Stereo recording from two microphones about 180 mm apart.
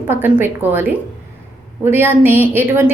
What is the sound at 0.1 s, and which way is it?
A woman's voice, 10° right (ahead or behind).